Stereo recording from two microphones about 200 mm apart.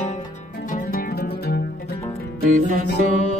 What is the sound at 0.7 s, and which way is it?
Music, 50° left (ahead or behind).